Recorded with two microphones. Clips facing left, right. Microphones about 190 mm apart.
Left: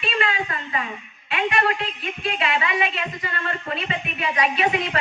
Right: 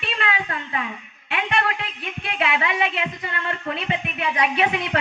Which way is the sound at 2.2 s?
60° right (ahead or behind).